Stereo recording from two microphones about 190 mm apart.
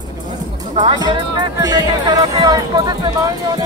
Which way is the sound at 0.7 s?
25° right (ahead or behind).